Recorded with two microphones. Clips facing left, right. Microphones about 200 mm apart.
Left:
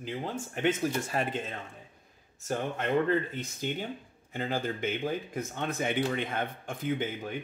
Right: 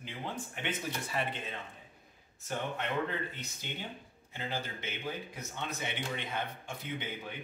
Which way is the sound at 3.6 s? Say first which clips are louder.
Left 8 dB; 45° left (ahead or behind).